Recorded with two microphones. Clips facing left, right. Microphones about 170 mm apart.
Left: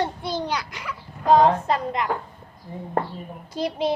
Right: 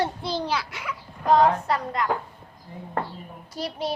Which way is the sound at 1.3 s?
20° left (ahead or behind).